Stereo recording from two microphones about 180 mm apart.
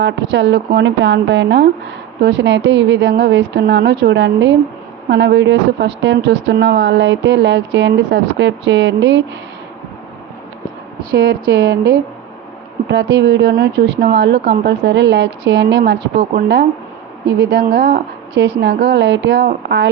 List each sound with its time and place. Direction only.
0.0 s a woman's voice: 90° right
11.1 s speech: 60° right (ahead or behind)
12.9 s a woman's voice: 90° right
13.6 s a woman's voice: 65° right (ahead or behind)
17.2 s a woman's voice: 70° right (ahead or behind)